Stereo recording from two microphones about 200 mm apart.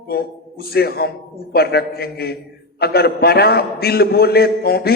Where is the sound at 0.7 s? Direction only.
50° left (ahead or behind).